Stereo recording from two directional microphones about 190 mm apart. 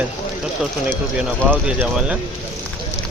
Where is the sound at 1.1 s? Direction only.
5° right (ahead or behind).